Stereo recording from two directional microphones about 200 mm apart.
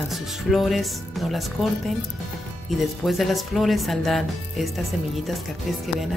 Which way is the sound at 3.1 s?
Centre (ahead or behind).